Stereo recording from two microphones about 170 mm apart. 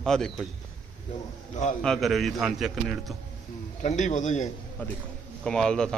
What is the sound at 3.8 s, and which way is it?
Speech, 45° left (ahead or behind).